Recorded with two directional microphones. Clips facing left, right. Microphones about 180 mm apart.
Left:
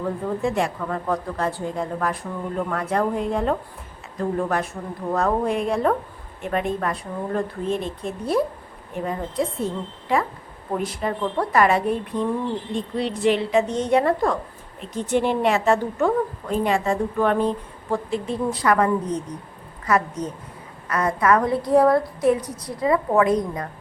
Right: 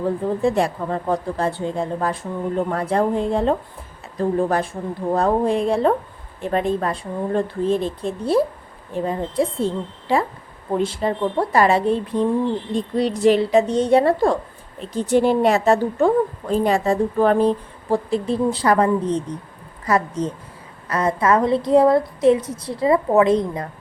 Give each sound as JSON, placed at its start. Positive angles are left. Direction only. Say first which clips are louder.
{"t": 0.4, "sound": "a woman's voice", "louder": "right 4 dB", "side_deg": -35}